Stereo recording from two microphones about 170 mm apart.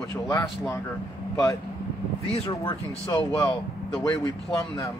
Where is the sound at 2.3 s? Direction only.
25° left (ahead or behind).